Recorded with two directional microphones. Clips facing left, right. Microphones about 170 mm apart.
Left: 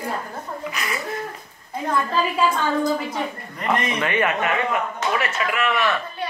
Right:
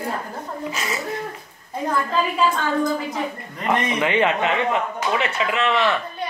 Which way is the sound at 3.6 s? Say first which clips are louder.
Right 2 dB; 15° right (ahead or behind).